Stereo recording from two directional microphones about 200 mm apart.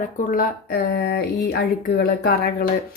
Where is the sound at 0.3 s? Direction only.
45° left (ahead or behind).